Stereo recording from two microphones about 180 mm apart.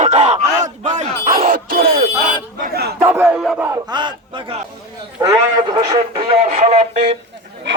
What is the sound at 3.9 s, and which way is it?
A man's voice, 25° right (ahead or behind).